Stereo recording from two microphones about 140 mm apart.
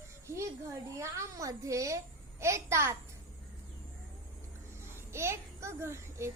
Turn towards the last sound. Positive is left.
turn(degrees=-20)  # may be behind; listen again after turning